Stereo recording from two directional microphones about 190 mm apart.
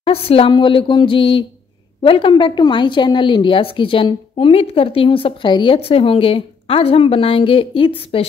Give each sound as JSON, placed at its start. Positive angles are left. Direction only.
{"t": 0.0, "sound": "a woman's voice", "side_deg": 30}